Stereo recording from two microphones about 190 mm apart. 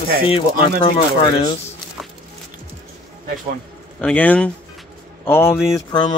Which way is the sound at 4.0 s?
10° left (ahead or behind).